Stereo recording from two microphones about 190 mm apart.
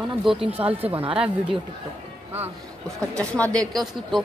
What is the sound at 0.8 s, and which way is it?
Speech, 30° right (ahead or behind).